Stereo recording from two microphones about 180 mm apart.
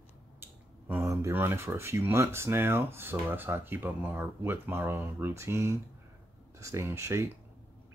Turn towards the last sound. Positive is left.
turn(degrees=-15)  # may be behind; listen again after turning